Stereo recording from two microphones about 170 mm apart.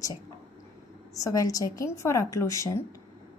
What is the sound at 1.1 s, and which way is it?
A woman's voice, 20° left (ahead or behind).